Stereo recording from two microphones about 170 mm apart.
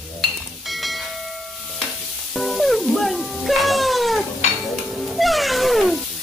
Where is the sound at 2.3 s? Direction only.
Centre (ahead or behind).